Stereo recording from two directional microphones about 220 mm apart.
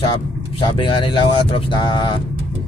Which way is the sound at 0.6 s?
25° left (ahead or behind).